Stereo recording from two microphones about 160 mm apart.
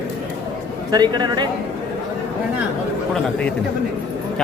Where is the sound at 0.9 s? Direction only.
25° right (ahead or behind).